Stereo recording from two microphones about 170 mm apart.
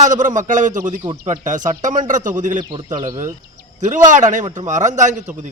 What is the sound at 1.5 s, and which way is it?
A man's voice, 50° right (ahead or behind).